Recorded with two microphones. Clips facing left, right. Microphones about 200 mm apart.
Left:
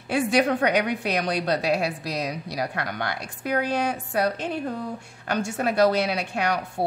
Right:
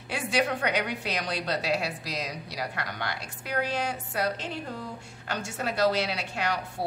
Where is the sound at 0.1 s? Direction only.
50° left (ahead or behind).